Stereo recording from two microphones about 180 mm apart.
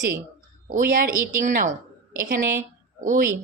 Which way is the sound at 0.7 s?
50° right (ahead or behind).